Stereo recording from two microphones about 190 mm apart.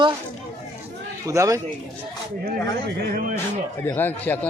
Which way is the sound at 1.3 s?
15° right (ahead or behind).